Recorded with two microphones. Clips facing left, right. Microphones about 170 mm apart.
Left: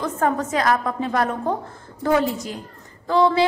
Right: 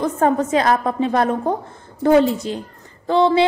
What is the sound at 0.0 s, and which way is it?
A woman's voice, 25° right (ahead or behind).